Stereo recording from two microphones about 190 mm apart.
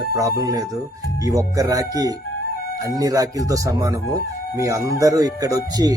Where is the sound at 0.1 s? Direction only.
20° right (ahead or behind).